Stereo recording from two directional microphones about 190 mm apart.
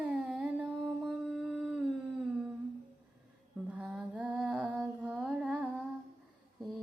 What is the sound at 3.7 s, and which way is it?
Mantra, 5° right (ahead or behind).